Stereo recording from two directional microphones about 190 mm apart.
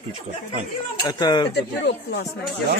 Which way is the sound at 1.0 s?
20° left (ahead or behind).